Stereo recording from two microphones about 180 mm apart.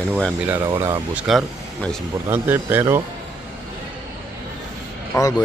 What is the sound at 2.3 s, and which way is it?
Speech, 10° right (ahead or behind).